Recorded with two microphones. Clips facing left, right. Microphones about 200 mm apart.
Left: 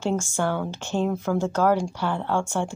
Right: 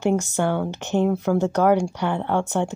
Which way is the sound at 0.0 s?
20° right (ahead or behind).